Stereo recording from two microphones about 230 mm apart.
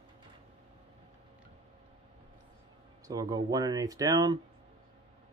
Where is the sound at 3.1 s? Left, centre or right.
Centre.